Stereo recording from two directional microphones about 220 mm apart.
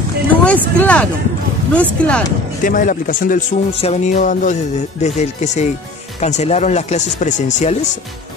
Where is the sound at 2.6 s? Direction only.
35° left (ahead or behind).